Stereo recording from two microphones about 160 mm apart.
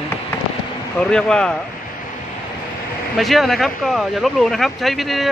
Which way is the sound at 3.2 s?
Centre (ahead or behind).